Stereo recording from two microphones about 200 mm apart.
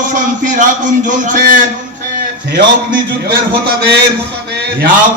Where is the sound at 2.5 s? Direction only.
60° right (ahead or behind).